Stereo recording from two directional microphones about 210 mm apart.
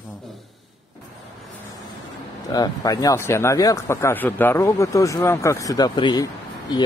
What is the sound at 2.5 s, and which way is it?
Speech, 20° left (ahead or behind).